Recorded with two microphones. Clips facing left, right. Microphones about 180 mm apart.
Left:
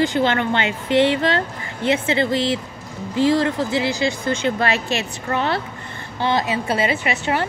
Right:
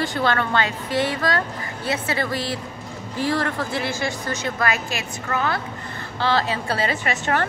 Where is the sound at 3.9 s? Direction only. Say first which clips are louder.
Left 5 dB; 45° right (ahead or behind).